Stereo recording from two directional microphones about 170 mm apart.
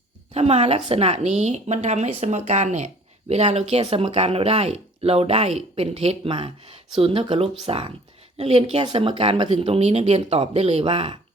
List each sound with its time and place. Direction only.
0.3 s a woman's voice: 35° right (ahead or behind)